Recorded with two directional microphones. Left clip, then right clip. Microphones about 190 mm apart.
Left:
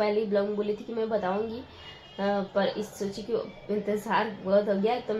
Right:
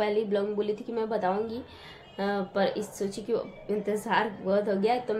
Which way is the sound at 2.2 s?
20° right (ahead or behind).